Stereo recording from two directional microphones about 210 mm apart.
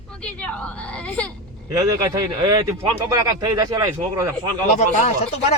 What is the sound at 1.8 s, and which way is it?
Speech, 15° right (ahead or behind).